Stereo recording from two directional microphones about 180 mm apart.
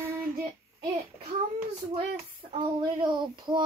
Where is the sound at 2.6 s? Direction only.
25° right (ahead or behind).